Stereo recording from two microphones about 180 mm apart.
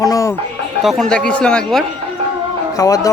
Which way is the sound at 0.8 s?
Centre (ahead or behind).